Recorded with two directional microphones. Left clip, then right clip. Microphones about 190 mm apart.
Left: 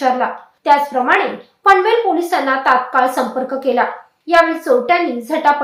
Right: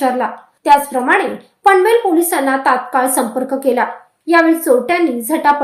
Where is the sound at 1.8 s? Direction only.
50° right (ahead or behind).